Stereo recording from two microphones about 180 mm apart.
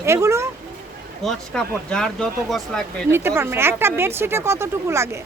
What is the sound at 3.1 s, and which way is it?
Speech, 15° right (ahead or behind).